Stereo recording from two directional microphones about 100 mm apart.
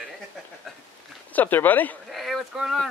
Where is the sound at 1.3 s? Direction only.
20° left (ahead or behind).